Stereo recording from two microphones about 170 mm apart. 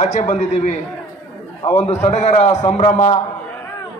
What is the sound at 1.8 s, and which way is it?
A man's voice, 40° left (ahead or behind).